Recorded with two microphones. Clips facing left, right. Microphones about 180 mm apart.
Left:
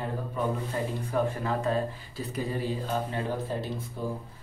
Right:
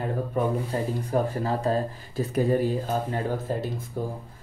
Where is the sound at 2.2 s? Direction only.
50° right (ahead or behind).